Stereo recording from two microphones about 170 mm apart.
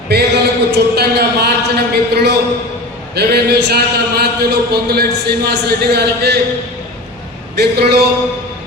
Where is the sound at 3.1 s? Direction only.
70° right (ahead or behind).